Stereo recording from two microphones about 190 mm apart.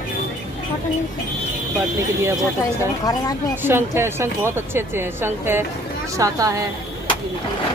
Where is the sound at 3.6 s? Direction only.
10° right (ahead or behind).